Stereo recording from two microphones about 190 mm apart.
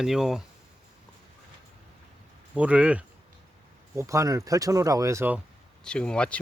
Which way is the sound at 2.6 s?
5° right (ahead or behind).